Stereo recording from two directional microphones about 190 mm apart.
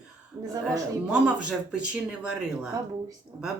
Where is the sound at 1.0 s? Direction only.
5° right (ahead or behind).